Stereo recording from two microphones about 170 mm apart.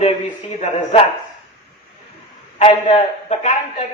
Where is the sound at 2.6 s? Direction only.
30° left (ahead or behind).